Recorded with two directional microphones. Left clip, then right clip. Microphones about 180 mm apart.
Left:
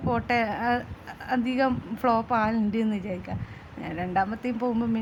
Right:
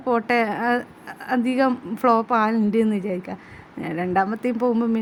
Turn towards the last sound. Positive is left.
turn(degrees=-25)  # may be behind; listen again after turning